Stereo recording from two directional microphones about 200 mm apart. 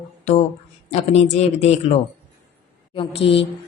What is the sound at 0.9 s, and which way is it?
Speech, 30° left (ahead or behind).